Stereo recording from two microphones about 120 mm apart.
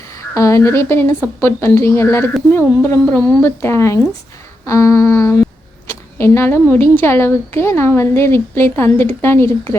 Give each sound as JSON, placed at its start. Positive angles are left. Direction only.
{"t": 0.1, "sound": "a woman's voice", "side_deg": 25}